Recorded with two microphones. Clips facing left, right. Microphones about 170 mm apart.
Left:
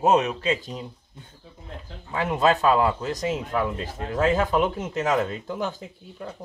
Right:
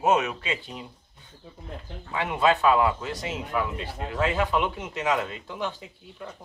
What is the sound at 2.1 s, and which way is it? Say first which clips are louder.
Speech: left 2 dB; 40° left (ahead or behind).